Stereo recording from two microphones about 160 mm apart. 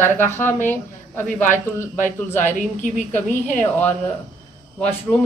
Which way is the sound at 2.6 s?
50° left (ahead or behind).